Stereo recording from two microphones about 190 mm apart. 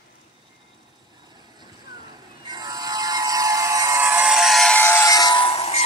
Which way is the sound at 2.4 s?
20° right (ahead or behind).